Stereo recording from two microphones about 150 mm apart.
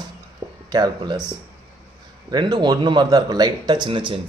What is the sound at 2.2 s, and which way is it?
Speech, 25° right (ahead or behind).